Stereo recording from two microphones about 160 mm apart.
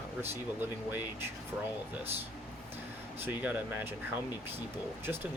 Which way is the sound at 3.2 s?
10° right (ahead or behind).